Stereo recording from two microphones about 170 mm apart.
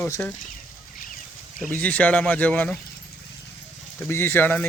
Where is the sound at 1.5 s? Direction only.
5° left (ahead or behind).